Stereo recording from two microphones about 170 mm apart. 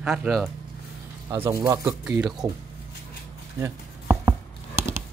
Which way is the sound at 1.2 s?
15° right (ahead or behind).